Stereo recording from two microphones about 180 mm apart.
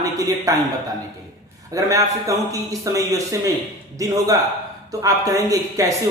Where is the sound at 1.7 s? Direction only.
20° right (ahead or behind).